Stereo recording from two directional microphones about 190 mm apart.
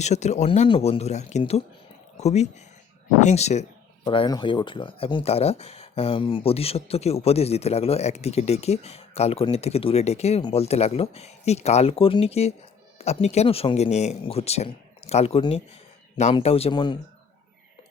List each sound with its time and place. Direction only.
0.0 s speech: 35° left (ahead or behind)